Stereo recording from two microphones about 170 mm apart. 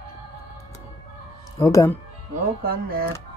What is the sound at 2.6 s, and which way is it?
Speech, 60° right (ahead or behind).